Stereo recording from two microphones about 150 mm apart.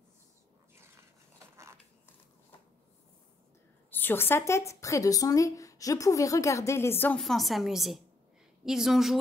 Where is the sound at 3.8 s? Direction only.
15° left (ahead or behind).